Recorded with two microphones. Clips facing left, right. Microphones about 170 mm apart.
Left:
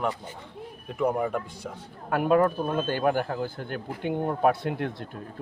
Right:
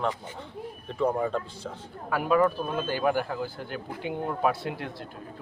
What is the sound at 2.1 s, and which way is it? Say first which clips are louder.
Speech: left 2 dB; 50° left (ahead or behind).